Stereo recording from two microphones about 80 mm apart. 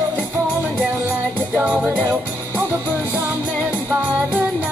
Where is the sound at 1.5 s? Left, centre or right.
Centre.